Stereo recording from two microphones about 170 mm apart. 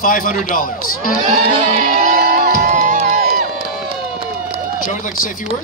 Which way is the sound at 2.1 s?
55° right (ahead or behind).